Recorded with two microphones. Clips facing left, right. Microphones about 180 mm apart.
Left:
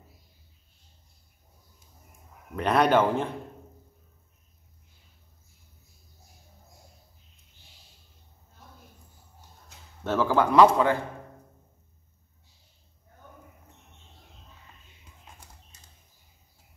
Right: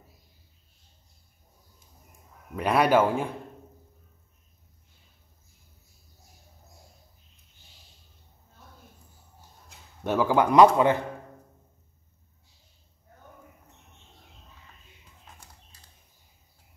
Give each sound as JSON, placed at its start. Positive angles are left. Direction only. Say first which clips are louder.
{"t": 2.5, "sound": "a man's voice", "louder": "even", "side_deg": -10}
{"t": 10.0, "sound": "a man's voice", "louder": "right 1 dB", "side_deg": -15}